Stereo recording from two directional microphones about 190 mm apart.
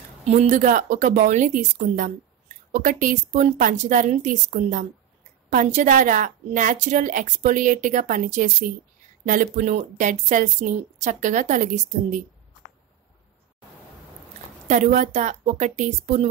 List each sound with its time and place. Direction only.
0.2 s a woman's voice: 35° right (ahead or behind)
14.7 s speech: 40° right (ahead or behind)